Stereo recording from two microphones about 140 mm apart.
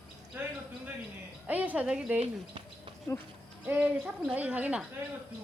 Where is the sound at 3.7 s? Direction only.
10° right (ahead or behind).